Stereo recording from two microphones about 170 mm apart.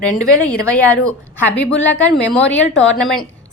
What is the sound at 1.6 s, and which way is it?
Speech, 90° left.